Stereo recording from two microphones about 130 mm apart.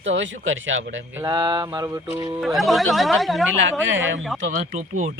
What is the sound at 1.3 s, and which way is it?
Speech, 30° right (ahead or behind).